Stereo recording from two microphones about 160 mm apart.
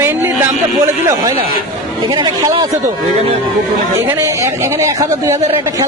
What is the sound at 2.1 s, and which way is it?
Speech, 25° right (ahead or behind).